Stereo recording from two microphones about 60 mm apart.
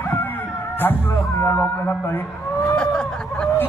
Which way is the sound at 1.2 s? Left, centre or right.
Left.